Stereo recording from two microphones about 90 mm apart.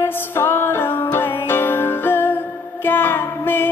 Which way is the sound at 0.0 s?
25° left (ahead or behind).